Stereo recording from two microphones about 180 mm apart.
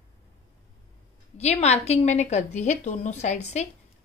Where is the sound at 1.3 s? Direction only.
35° left (ahead or behind).